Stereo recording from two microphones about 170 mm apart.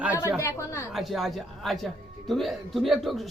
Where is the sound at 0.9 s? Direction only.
Centre (ahead or behind).